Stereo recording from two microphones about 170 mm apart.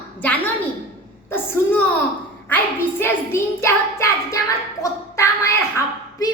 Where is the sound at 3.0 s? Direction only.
15° left (ahead or behind).